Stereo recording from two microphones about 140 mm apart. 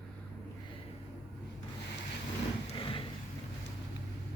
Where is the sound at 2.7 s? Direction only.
40° left (ahead or behind).